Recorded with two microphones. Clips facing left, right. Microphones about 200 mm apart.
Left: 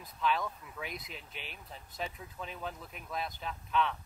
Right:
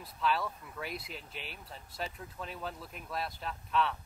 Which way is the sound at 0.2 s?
Centre (ahead or behind).